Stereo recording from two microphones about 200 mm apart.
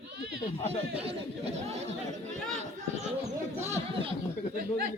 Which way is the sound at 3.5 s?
35° right (ahead or behind).